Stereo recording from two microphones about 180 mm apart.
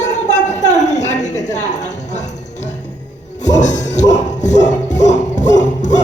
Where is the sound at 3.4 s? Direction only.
40° left (ahead or behind).